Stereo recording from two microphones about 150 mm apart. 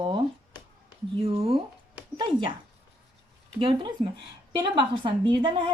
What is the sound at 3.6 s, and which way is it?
A woman's voice, 35° right (ahead or behind).